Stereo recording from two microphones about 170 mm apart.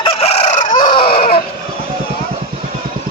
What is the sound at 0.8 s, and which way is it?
Dog, 30° left (ahead or behind).